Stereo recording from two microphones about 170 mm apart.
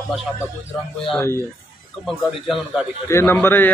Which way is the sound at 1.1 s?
10° left (ahead or behind).